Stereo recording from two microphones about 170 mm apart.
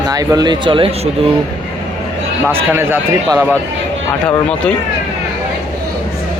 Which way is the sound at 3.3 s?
10° left (ahead or behind).